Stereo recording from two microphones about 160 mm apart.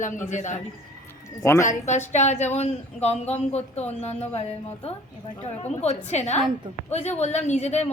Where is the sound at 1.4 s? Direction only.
20° left (ahead or behind).